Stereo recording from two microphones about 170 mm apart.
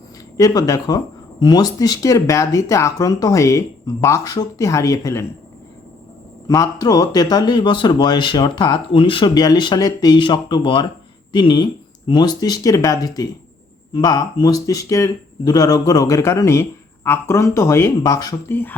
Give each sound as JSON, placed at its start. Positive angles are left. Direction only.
{"t": 0.3, "sound": "speech", "side_deg": 20}
{"t": 6.5, "sound": "speech", "side_deg": 20}